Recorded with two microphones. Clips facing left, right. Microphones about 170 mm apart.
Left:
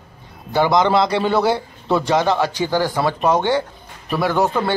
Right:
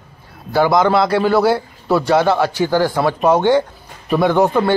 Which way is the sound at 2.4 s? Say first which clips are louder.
Right 3 dB; 15° left (ahead or behind).